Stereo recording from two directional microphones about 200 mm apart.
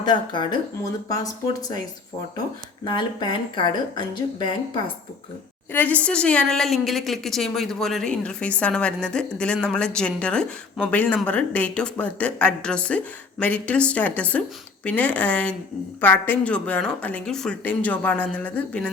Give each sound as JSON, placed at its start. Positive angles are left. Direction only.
{"t": 0.0, "sound": "a woman's voice", "side_deg": 20}
{"t": 2.8, "sound": "a woman's voice", "side_deg": 20}
{"t": 5.7, "sound": "a woman's voice", "side_deg": 10}